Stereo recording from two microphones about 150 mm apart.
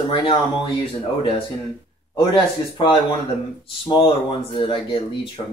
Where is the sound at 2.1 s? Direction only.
30° left (ahead or behind).